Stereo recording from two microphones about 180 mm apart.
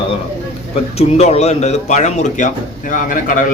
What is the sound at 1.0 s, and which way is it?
Speech, 35° left (ahead or behind).